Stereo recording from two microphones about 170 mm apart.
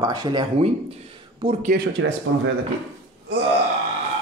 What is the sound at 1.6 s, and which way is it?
Speech, 65° right (ahead or behind).